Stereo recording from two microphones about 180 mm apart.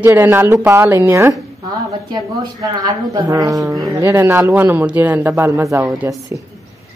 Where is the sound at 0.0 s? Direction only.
10° right (ahead or behind).